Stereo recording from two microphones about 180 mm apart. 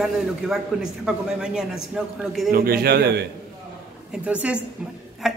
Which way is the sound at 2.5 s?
55° right (ahead or behind).